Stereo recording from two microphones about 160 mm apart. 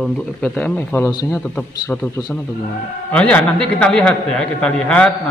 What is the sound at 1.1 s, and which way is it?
Speech, 25° left (ahead or behind).